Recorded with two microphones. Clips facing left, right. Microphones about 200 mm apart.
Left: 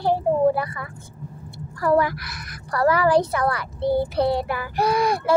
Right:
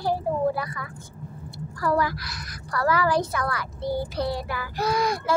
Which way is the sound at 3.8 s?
60° left (ahead or behind).